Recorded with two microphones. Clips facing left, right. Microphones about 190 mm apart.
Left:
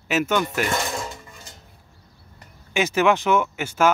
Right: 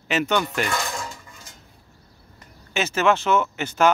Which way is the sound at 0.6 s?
20° left (ahead or behind).